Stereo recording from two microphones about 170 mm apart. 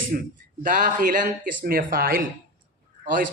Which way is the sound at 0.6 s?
50° right (ahead or behind).